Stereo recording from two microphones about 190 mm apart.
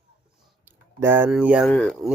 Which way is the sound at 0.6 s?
10° right (ahead or behind).